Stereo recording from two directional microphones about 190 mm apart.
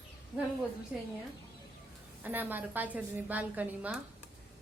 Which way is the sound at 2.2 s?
10° right (ahead or behind).